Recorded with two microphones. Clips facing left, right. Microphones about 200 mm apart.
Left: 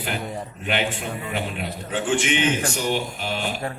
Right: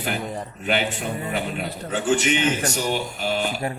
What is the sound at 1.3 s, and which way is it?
A man's voice, 40° right (ahead or behind).